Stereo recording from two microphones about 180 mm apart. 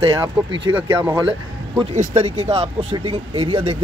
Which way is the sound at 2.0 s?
35° right (ahead or behind).